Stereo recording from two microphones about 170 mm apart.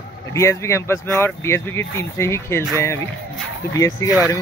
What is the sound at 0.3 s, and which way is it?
Speech, 15° left (ahead or behind).